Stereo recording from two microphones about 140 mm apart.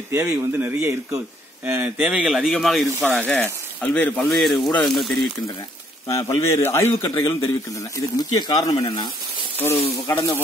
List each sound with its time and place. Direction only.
0.1 s speech: 20° right (ahead or behind); by 4.4 s 10° left (ahead or behind)
4.4 s speech: centre (ahead or behind)
6.0 s speech: 20° left (ahead or behind)
9.6 s speech: 15° left (ahead or behind)